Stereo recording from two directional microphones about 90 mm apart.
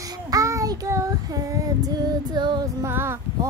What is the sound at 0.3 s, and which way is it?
Child singing, 35° right (ahead or behind).